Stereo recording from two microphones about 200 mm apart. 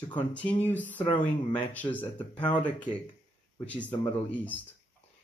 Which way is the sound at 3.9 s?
10° left (ahead or behind).